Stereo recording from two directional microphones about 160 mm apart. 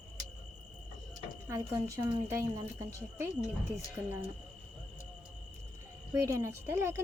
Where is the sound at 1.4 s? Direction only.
20° right (ahead or behind).